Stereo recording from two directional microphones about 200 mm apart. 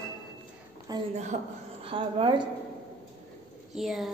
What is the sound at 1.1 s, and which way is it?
A woman's voice, 35° right (ahead or behind).